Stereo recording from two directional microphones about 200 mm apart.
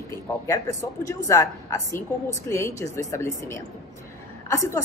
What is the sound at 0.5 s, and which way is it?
A woman's voice, 15° left (ahead or behind).